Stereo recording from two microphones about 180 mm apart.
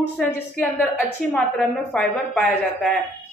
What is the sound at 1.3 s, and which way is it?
A woman's voice, centre (ahead or behind).